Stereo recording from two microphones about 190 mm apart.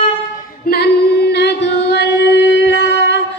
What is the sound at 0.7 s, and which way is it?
Singing, 55° left (ahead or behind).